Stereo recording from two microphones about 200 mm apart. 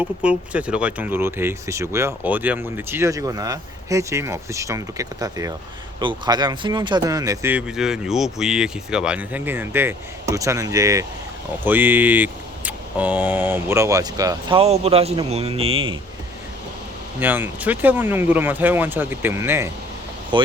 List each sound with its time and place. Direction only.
0.0 s speech: 5° right (ahead or behind)
7.5 s speech: 5° right (ahead or behind); by 14.6 s 20° right (ahead or behind)
14.6 s speech: 30° right (ahead or behind)
17.2 s speech: 10° right (ahead or behind)